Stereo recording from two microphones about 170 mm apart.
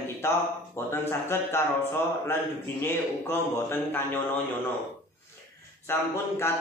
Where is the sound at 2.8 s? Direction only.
15° left (ahead or behind).